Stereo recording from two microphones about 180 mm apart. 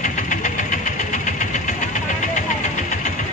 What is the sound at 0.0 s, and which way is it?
Vehicle, 45° left (ahead or behind).